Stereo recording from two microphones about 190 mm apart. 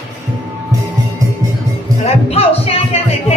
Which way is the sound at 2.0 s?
30° left (ahead or behind).